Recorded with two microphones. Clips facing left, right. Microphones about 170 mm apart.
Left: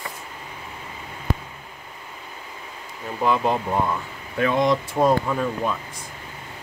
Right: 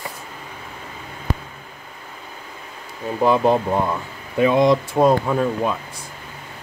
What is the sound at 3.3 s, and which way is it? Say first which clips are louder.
Speech: right 5 dB; 30° right (ahead or behind).